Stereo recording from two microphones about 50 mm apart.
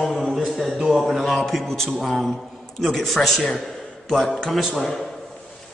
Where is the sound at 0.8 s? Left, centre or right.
Centre.